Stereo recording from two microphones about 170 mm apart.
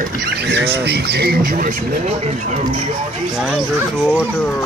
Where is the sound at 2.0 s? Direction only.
40° right (ahead or behind).